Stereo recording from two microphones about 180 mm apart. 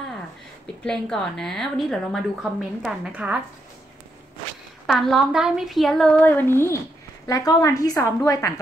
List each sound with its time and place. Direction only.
0.8 s a woman's voice: 5° left (ahead or behind)
4.8 s a woman's voice: centre (ahead or behind)